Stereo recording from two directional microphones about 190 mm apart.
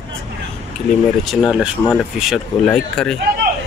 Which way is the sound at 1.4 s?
Centre (ahead or behind).